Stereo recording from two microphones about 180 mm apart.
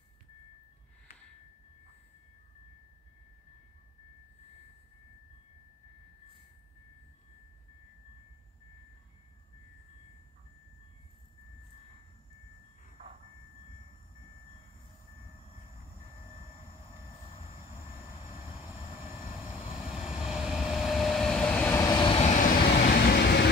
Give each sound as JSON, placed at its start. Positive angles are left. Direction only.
{"t": 17.7, "sound": "train", "side_deg": -15}
{"t": 19.8, "sound": "vehicle", "side_deg": -5}
{"t": 22.9, "sound": "vehicle", "side_deg": 60}